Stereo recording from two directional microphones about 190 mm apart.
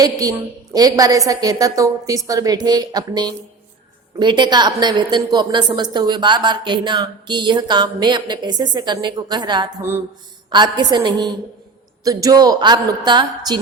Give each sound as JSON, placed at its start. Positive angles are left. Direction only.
{"t": 0.0, "sound": "a woman's voice", "side_deg": -20}